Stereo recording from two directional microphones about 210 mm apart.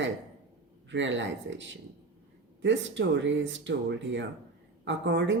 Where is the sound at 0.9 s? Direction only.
60° right (ahead or behind).